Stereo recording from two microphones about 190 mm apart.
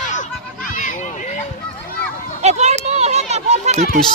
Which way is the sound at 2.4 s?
35° right (ahead or behind).